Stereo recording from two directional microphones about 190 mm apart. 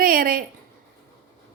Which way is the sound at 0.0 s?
45° right (ahead or behind).